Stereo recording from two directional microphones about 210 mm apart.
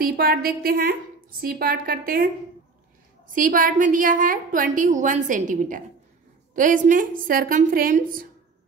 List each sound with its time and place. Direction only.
0.0 s a woman's voice: 45° right (ahead or behind)
3.3 s a woman's voice: 40° right (ahead or behind)